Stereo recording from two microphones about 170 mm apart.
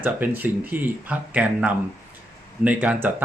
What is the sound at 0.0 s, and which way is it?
Speech, 10° right (ahead or behind).